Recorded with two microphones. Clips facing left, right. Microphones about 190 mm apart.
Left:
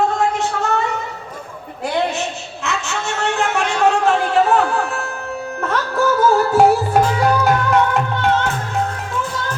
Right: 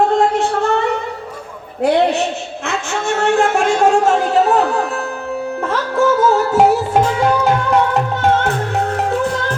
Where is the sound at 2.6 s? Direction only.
55° right (ahead or behind).